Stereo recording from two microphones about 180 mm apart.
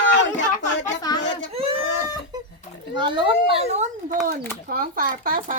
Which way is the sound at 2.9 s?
25° right (ahead or behind).